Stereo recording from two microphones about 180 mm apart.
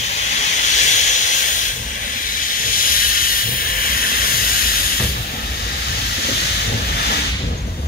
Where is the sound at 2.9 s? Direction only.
55° left (ahead or behind).